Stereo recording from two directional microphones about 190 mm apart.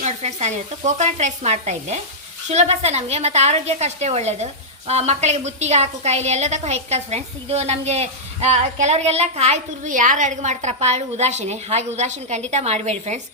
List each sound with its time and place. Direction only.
0.0 s a woman's voice: 35° right (ahead or behind)